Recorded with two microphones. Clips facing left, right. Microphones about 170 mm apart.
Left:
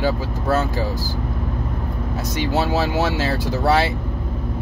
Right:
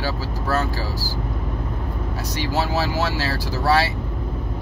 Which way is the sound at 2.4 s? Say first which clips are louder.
Left 3 dB; 20° left (ahead or behind).